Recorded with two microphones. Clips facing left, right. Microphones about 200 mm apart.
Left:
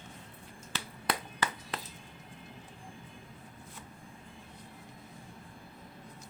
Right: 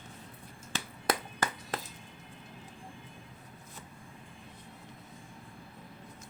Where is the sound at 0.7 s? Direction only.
45° right (ahead or behind).